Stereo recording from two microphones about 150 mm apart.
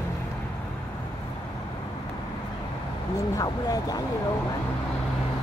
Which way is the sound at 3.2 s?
25° left (ahead or behind).